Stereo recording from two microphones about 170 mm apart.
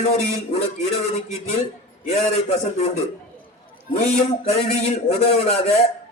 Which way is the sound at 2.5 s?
40° left (ahead or behind).